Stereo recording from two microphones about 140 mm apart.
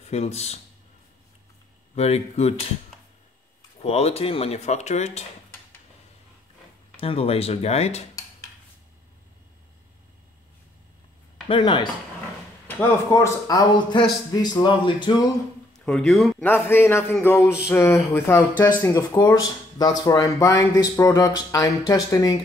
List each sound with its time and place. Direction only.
0.0 s speech: 50° left (ahead or behind)
2.0 s speech: 50° left (ahead or behind)
3.8 s speech: 45° left (ahead or behind)
7.0 s speech: 45° left (ahead or behind)
11.4 s speech: 35° left (ahead or behind)
12.6 s speech: 15° left (ahead or behind); by 15.2 s 35° left (ahead or behind)
15.8 s speech: 5° left (ahead or behind)
16.6 s speech: 15° left (ahead or behind)